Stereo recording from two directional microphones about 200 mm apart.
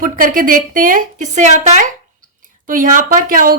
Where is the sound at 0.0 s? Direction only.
45° right (ahead or behind).